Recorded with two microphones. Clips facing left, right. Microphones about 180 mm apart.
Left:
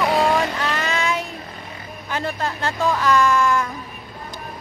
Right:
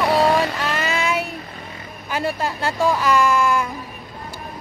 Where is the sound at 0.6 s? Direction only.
Centre (ahead or behind).